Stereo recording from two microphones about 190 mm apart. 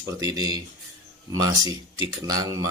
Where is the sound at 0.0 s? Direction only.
20° right (ahead or behind).